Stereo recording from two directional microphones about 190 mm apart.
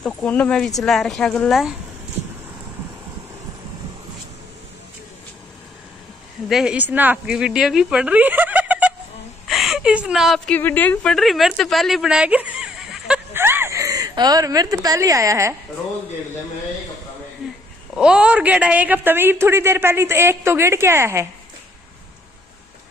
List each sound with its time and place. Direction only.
0.0 s speech: 5° left (ahead or behind)
6.5 s a woman's voice: 5° right (ahead or behind)
13.3 s a sound: 10° right (ahead or behind)
17.9 s a woman's voice: 5° right (ahead or behind)